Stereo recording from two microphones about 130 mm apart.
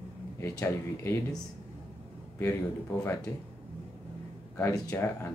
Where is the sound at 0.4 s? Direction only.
20° left (ahead or behind).